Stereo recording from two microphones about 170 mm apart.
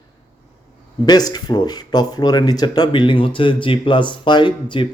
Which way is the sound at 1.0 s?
25° left (ahead or behind).